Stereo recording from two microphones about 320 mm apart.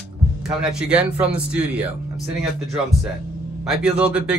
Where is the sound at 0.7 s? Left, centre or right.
Centre.